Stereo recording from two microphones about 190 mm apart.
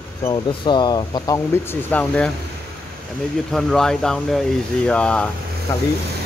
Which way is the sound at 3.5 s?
Centre (ahead or behind).